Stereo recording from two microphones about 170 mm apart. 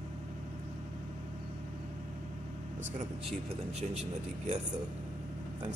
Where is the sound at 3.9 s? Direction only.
40° right (ahead or behind).